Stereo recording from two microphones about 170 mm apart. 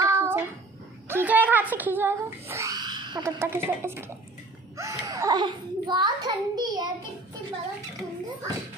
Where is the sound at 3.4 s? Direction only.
15° right (ahead or behind).